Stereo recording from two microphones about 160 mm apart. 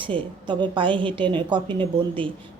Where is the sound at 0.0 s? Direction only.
30° right (ahead or behind).